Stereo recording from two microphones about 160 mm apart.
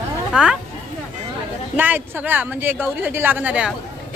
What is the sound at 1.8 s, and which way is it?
Speech, 10° right (ahead or behind).